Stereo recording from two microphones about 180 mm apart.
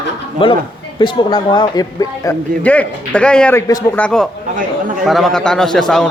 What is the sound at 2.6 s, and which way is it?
Speech, 5° left (ahead or behind).